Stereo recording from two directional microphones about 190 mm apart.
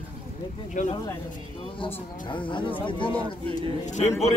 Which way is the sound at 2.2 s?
25° left (ahead or behind).